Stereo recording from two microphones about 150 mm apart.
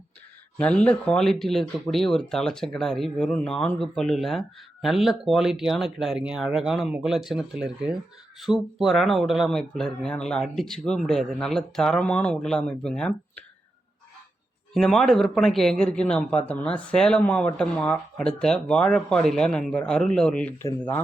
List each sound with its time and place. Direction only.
0.6 s a man's voice: 5° left (ahead or behind)
14.7 s a man's voice: 5° left (ahead or behind)